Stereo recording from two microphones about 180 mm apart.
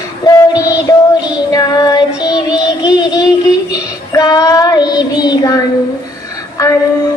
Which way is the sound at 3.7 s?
20° left (ahead or behind).